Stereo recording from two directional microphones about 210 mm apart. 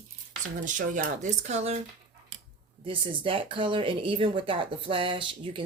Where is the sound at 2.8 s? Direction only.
25° right (ahead or behind).